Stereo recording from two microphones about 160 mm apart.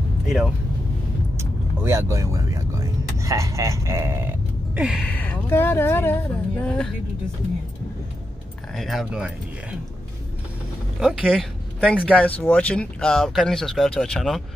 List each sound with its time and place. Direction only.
1.3 s vehicle: 20° right (ahead or behind)
4.7 s speech: 5° right (ahead or behind)
5.0 s speech: 10° left (ahead or behind)
8.7 s speech: centre (ahead or behind)
11.0 s speech: 5° right (ahead or behind)